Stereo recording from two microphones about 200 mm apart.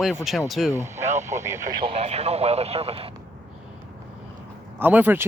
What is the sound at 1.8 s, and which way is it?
Speech, 30° right (ahead or behind).